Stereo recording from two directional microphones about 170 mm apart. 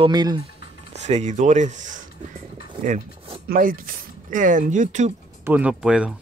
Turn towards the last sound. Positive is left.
turn(degrees=-5)  # may be behind; listen again after turning